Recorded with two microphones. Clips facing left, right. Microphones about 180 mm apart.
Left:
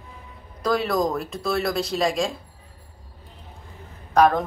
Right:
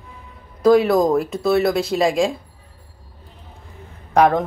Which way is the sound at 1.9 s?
15° right (ahead or behind).